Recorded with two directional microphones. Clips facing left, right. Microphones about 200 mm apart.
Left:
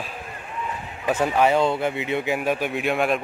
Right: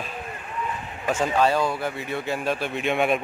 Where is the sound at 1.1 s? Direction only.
15° left (ahead or behind); by 3.2 s centre (ahead or behind).